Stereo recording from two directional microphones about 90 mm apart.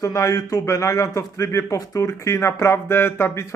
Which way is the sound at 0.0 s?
35° left (ahead or behind).